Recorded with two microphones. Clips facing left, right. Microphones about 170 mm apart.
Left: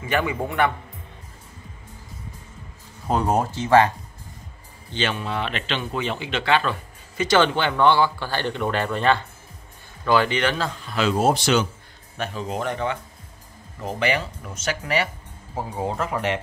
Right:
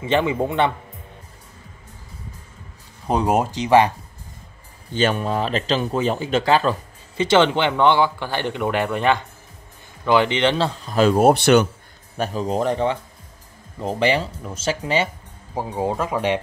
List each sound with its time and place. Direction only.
0.0 s speech: 25° right (ahead or behind)
3.1 s speech: 20° right (ahead or behind)
4.9 s speech: 45° right (ahead or behind); by 11.6 s 60° right (ahead or behind)
12.2 s speech: 40° right (ahead or behind); by 16.3 s 15° right (ahead or behind)